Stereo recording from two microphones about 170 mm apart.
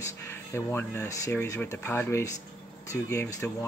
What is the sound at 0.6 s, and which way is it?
Speech, 15° left (ahead or behind).